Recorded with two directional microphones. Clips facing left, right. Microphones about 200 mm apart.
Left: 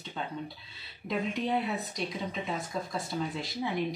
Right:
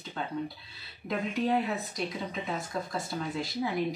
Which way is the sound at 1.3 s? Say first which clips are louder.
Right 4 dB; centre (ahead or behind).